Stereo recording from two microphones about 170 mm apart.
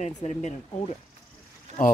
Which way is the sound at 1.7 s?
40° right (ahead or behind).